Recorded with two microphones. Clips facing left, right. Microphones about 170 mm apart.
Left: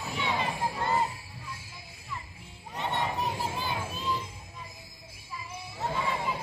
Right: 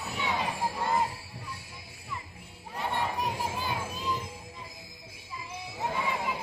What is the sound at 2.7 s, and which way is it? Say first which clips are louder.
Crowd: even; 10° right (ahead or behind).